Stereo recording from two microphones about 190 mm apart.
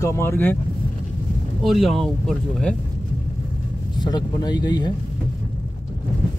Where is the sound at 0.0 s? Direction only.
15° left (ahead or behind).